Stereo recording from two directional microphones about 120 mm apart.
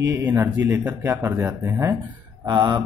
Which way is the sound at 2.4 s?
35° right (ahead or behind).